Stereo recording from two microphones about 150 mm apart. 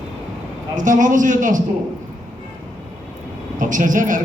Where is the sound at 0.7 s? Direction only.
60° right (ahead or behind).